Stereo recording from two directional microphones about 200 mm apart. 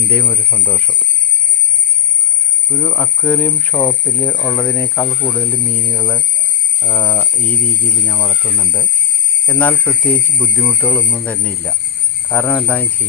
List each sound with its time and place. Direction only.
0.1 s speech: 10° left (ahead or behind)
2.6 s speech: 15° left (ahead or behind)